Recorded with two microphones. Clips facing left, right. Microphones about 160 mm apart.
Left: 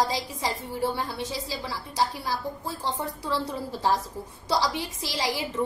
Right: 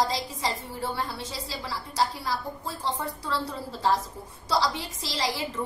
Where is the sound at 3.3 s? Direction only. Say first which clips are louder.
Left 3 dB; 20° left (ahead or behind).